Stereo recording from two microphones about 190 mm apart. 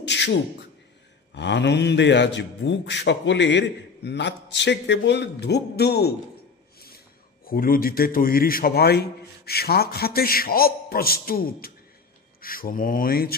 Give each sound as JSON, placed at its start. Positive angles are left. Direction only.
{"t": 0.0, "sound": "beatboxing", "side_deg": 65}
{"t": 1.3, "sound": "a man's voice", "side_deg": 65}
{"t": 7.4, "sound": "a man's voice", "side_deg": 50}